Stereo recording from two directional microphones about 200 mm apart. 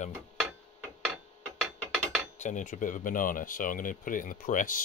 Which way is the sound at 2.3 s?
40° left (ahead or behind).